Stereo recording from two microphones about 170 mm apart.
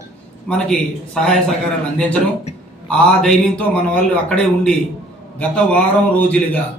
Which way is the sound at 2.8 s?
5° left (ahead or behind).